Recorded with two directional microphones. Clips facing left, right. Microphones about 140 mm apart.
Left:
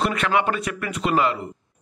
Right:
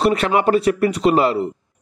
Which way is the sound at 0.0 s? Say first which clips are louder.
Right 5 dB; 35° right (ahead or behind).